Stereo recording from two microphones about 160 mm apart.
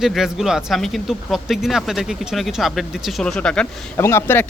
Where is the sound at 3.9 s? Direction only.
15° left (ahead or behind).